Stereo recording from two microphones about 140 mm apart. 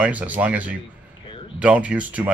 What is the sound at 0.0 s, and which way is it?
Speech, 10° right (ahead or behind).